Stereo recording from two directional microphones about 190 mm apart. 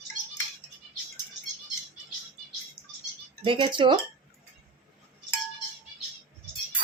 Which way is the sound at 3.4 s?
25° right (ahead or behind).